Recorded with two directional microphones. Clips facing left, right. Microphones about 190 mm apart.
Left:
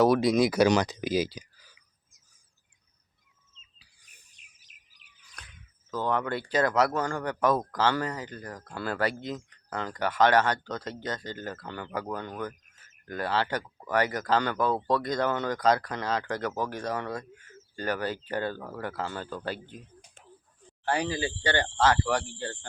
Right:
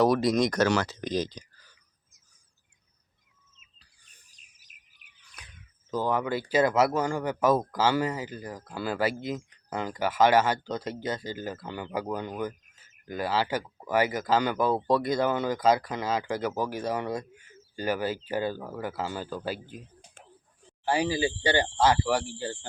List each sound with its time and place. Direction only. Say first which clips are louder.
0.0 s speech: left 1 dB; centre (ahead or behind)
0.7 s speech: left 2 dB; 15° left (ahead or behind)
4.3 s bird vocalization: left 1 dB; 35° right (ahead or behind)
5.4 s a sound: left 1 dB; 10° right (ahead or behind)
5.9 s speech: right 1 dB; 10° right (ahead or behind)
20.8 s speech: right 3 dB; 10° right (ahead or behind)